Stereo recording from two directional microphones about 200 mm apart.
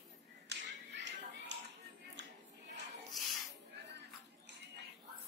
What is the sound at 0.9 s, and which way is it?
Music, 60° right (ahead or behind).